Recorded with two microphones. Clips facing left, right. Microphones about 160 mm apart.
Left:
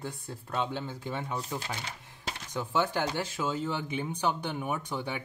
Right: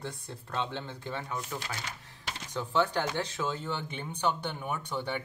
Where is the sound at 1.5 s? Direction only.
20° left (ahead or behind).